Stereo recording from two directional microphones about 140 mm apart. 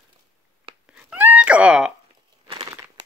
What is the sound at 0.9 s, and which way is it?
Cat, 10° right (ahead or behind).